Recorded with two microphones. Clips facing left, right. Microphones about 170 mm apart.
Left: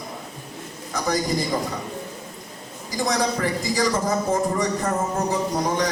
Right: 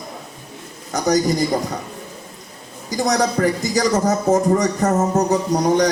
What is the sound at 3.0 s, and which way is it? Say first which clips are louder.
A man's voice: right 5 dB; 40° right (ahead or behind).